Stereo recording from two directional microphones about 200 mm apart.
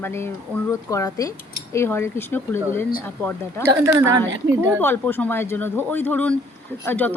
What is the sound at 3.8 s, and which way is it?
Speech, 15° right (ahead or behind).